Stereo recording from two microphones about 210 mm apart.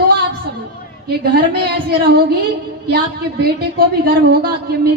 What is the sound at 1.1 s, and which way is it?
A woman's voice, 50° right (ahead or behind).